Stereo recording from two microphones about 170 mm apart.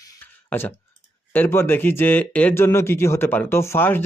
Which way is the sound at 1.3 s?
10° left (ahead or behind).